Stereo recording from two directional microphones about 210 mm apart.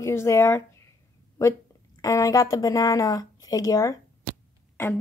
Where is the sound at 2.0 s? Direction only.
15° left (ahead or behind).